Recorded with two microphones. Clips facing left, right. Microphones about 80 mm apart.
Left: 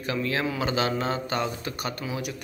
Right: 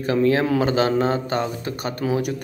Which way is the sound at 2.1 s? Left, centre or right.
Right.